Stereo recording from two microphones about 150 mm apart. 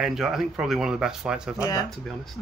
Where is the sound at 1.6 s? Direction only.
25° left (ahead or behind).